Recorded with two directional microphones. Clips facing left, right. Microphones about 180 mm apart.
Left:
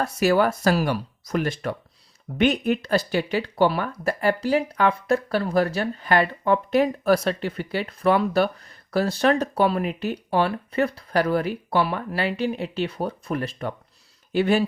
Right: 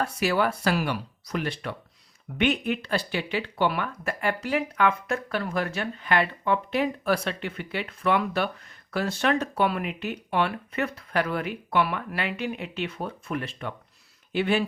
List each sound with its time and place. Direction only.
0.0 s speech: 40° left (ahead or behind)